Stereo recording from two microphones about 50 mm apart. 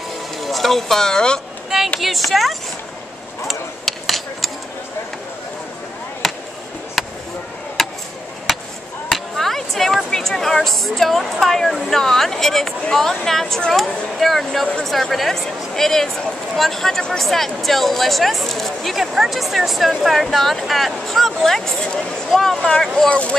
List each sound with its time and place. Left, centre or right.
0.4 s speech: centre
2.0 s speech: centre
3.4 s chop: centre
7.0 s a sound: centre
9.1 s a sound: centre
10.1 s speech: centre
23.0 s speech: left